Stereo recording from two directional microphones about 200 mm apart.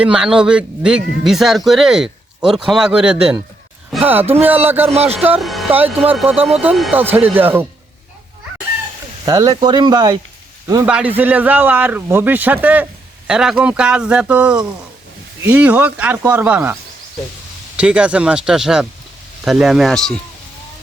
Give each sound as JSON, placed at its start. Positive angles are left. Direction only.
{"t": 0.0, "sound": "a man's voice", "side_deg": -5}
{"t": 4.9, "sound": "speech", "side_deg": -30}
{"t": 5.2, "sound": "a man's voice", "side_deg": -5}
{"t": 9.2, "sound": "speech", "side_deg": -20}
{"t": 10.8, "sound": "a man's voice", "side_deg": -5}
{"t": 17.7, "sound": "speech", "side_deg": -5}